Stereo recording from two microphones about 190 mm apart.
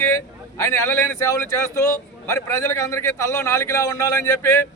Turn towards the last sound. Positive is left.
turn(degrees=15)  # may be behind; listen again after turning